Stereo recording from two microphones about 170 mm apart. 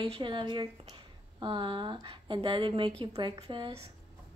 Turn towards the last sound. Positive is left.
turn(degrees=-30)  # may be behind; listen again after turning